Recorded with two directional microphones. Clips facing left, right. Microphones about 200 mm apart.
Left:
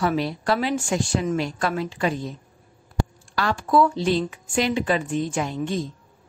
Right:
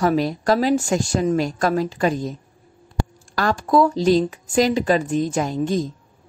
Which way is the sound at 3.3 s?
40° right (ahead or behind).